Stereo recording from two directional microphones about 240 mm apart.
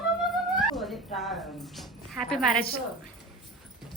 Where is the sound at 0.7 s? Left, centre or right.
Centre.